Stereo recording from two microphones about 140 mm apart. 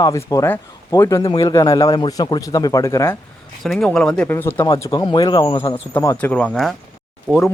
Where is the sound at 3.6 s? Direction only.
Centre (ahead or behind); by 6.2 s 25° left (ahead or behind).